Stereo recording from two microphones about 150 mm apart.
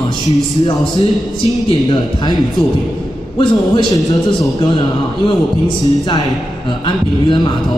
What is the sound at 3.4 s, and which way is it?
A man's voice, 30° left (ahead or behind).